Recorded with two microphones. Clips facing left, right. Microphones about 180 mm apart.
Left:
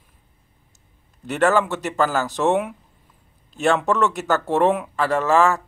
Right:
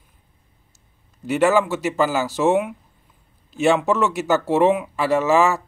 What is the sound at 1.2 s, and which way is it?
Speech, 5° right (ahead or behind).